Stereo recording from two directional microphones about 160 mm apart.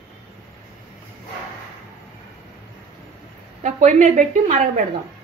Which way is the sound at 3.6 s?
50° right (ahead or behind).